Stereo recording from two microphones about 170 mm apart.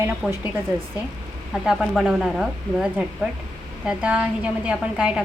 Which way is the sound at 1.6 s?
5° right (ahead or behind).